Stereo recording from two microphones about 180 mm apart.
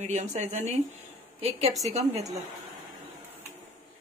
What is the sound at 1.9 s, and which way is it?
Speech, 40° right (ahead or behind).